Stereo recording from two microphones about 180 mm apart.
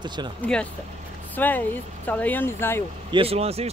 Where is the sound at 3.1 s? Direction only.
30° right (ahead or behind).